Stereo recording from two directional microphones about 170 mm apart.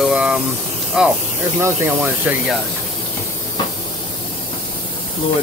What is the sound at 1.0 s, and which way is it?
Speech, 5° right (ahead or behind).